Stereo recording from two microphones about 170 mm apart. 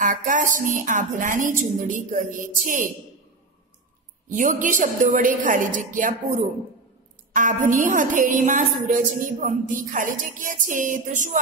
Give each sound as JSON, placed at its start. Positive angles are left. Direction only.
{"t": 0.0, "sound": "a woman's voice", "side_deg": -50}
{"t": 4.3, "sound": "a woman's voice", "side_deg": -50}
{"t": 7.3, "sound": "a woman's voice", "side_deg": -50}